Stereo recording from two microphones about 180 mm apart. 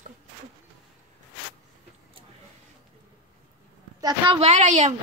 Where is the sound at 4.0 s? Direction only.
20° right (ahead or behind).